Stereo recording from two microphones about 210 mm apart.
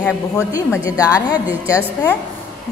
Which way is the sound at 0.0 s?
15° left (ahead or behind).